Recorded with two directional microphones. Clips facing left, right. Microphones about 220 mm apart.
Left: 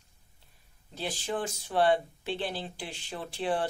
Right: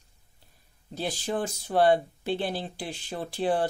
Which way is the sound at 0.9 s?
40° right (ahead or behind).